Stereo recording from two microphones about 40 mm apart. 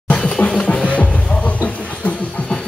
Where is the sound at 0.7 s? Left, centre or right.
Left.